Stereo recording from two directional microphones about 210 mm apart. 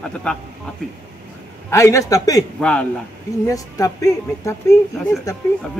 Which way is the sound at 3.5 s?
15° left (ahead or behind).